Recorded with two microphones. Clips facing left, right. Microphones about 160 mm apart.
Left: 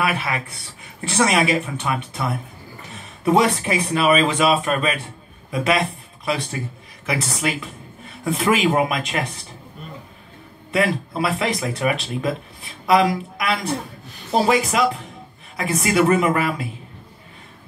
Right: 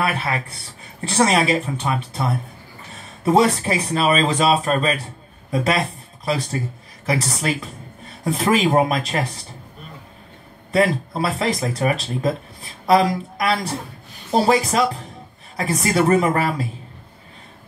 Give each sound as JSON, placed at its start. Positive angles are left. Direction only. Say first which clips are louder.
{"t": 0.0, "sound": "speech", "louder": "even", "side_deg": -35}
{"t": 3.3, "sound": "speech", "louder": "right 1 dB", "side_deg": -35}
{"t": 7.1, "sound": "speech", "louder": "right 2 dB", "side_deg": -35}
{"t": 10.7, "sound": "speech", "louder": "right 2 dB", "side_deg": -35}